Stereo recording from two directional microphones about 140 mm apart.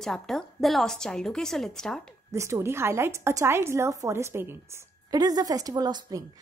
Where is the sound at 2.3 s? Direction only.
20° right (ahead or behind).